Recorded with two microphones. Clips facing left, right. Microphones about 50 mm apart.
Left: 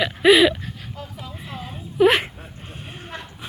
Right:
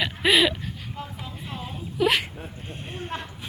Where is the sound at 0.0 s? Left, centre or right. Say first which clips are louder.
Left 6 dB; centre.